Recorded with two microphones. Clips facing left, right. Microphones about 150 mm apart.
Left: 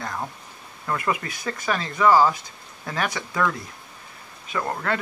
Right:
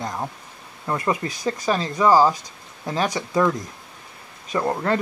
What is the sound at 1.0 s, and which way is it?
Speech, 30° right (ahead or behind).